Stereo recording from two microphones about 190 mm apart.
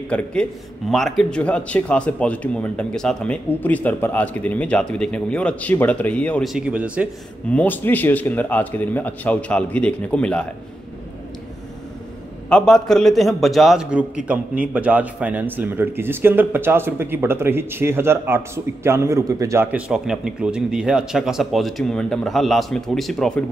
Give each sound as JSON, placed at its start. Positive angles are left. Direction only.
{"t": 0.1, "sound": "a man's voice", "side_deg": 5}
{"t": 7.5, "sound": "a man's voice", "side_deg": 10}
{"t": 12.4, "sound": "a man's voice", "side_deg": 5}